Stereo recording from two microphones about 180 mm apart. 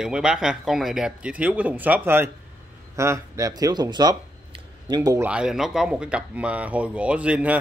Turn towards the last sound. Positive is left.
turn(degrees=-5)  # may be behind; listen again after turning